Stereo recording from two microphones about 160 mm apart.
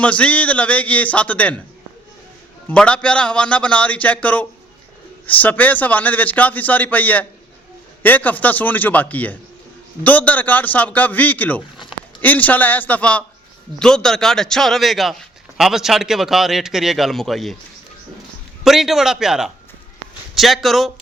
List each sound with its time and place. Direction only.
0.0 s a man's voice: 10° left (ahead or behind)
2.6 s a man's voice: 5° left (ahead or behind)
18.6 s a man's voice: centre (ahead or behind)